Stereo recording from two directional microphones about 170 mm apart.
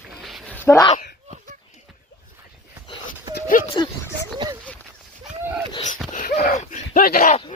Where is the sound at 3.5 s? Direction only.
50° left (ahead or behind).